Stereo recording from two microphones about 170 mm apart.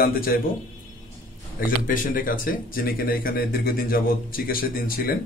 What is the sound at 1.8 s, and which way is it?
Speech, 55° left (ahead or behind).